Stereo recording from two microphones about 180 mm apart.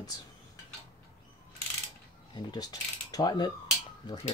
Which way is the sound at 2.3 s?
20° left (ahead or behind).